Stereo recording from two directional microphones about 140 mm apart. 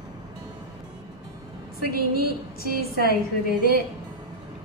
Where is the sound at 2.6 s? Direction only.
90° left.